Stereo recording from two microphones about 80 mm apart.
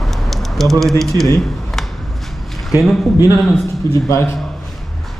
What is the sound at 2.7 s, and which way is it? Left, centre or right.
Speech, centre.